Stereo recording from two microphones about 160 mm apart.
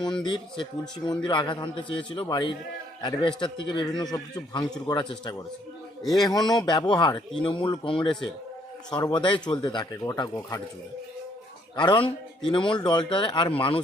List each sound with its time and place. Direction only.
0.3 s a man's voice: 30° left (ahead or behind)
6.0 s a man's voice: centre (ahead or behind)
6.2 s a man's voice: 25° left (ahead or behind)
11.8 s a man's voice: 30° left (ahead or behind)